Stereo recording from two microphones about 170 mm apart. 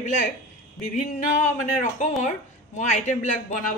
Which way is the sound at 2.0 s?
45° left (ahead or behind).